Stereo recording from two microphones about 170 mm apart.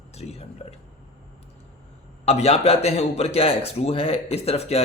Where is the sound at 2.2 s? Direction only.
40° left (ahead or behind).